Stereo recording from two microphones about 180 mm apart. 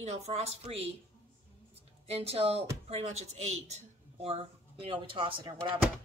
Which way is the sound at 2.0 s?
35° right (ahead or behind).